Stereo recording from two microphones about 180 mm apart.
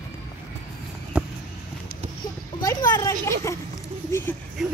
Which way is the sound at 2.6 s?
20° left (ahead or behind).